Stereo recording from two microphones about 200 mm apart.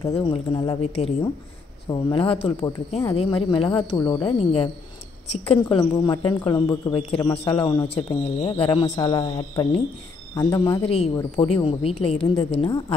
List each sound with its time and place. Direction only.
0.1 s speech: 25° left (ahead or behind)
3.9 s speech: 15° left (ahead or behind)
4.2 s speech: 30° left (ahead or behind)